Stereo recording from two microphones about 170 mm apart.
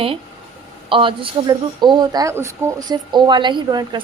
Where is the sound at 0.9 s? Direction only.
30° right (ahead or behind).